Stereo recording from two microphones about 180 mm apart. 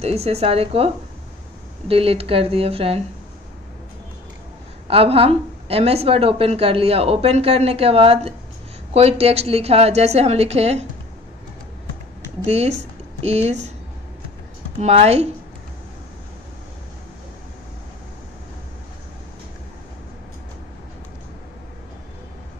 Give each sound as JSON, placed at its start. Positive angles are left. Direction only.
{"t": 0.0, "sound": "a woman's voice", "side_deg": -35}
{"t": 4.8, "sound": "a woman's voice", "side_deg": -30}
{"t": 12.4, "sound": "a woman's voice", "side_deg": -35}
{"t": 14.8, "sound": "a woman's voice", "side_deg": -35}